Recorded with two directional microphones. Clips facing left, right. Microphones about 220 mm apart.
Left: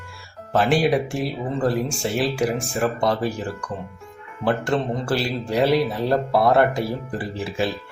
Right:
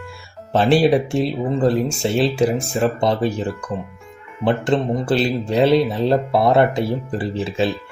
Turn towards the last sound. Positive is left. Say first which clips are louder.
# right 4 dB
turn(degrees=-25)  # may be behind; listen again after turning